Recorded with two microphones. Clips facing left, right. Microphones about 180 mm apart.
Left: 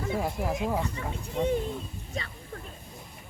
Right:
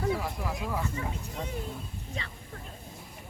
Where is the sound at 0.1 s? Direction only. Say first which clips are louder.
Left 2 dB; 25° left (ahead or behind).